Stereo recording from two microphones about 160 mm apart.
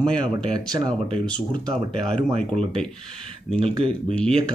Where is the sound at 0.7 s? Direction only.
25° right (ahead or behind).